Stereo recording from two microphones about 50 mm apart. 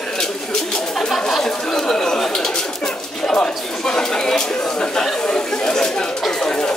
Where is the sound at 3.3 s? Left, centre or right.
Centre.